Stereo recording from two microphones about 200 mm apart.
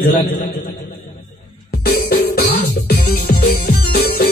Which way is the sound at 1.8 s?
50° left (ahead or behind).